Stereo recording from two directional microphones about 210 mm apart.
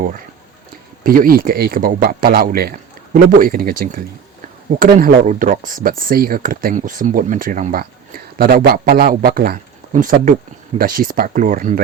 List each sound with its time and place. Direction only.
1.0 s a man's voice: 40° right (ahead or behind)